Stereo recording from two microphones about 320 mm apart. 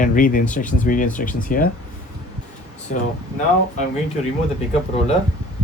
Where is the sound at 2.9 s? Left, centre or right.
Left.